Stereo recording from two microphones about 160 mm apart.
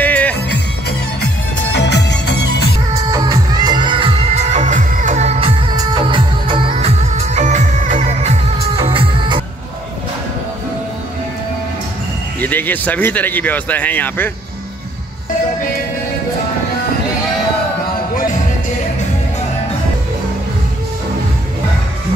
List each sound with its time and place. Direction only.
0.0 s music: 10° left (ahead or behind)
0.5 s music: 90° left
2.9 s music: 20° right (ahead or behind); by 5.5 s 45° right (ahead or behind)
5.7 s music: 30° right (ahead or behind)
12.4 s speech: 10° left (ahead or behind)